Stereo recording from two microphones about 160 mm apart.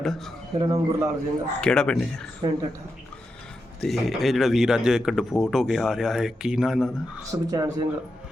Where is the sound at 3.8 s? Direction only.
Centre (ahead or behind).